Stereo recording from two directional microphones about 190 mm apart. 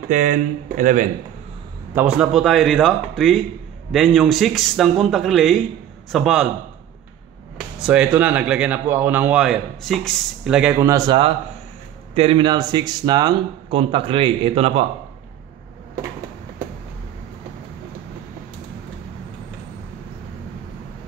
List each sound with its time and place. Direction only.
0.1 s speech: 40° right (ahead or behind)
2.0 s speech: 5° right (ahead or behind)
7.8 s a man's voice: 5° right (ahead or behind); by 14.9 s 30° right (ahead or behind)